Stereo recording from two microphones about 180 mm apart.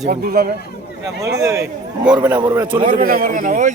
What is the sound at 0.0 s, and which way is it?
Speech, 60° right (ahead or behind).